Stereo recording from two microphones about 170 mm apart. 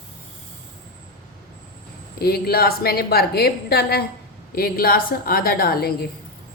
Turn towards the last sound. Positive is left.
turn(degrees=65)  # may be behind; listen again after turning